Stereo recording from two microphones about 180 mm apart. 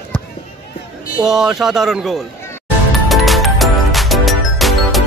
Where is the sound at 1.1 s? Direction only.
Centre (ahead or behind).